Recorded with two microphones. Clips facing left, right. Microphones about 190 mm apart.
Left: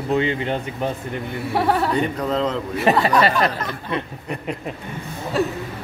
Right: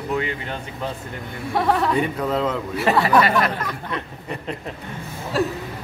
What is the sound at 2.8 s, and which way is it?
Speech, 25° left (ahead or behind).